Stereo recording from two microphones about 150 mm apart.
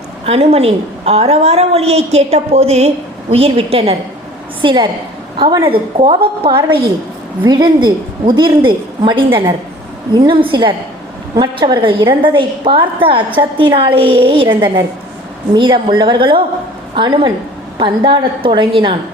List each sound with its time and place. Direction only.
0.3 s a woman's voice: 40° right (ahead or behind)